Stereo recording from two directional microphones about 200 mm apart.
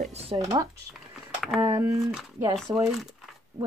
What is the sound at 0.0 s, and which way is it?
Speech, 30° right (ahead or behind).